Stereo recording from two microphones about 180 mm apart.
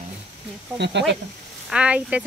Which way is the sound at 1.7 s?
5° right (ahead or behind).